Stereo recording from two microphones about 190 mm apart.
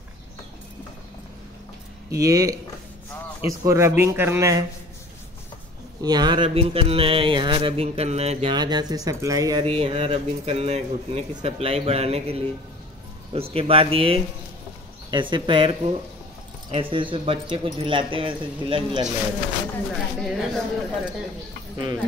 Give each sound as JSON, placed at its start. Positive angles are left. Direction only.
{"t": 2.0, "sound": "a man's voice", "side_deg": -20}
{"t": 5.9, "sound": "speech", "side_deg": -20}
{"t": 8.5, "sound": "speech", "side_deg": -20}
{"t": 20.2, "sound": "speech", "side_deg": 0}